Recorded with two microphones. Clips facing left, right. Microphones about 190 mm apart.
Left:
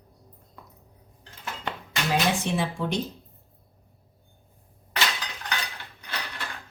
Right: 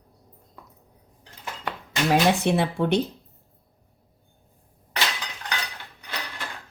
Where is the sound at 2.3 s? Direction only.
65° right (ahead or behind).